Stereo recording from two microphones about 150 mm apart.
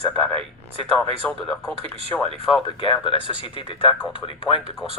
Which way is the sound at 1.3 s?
10° left (ahead or behind).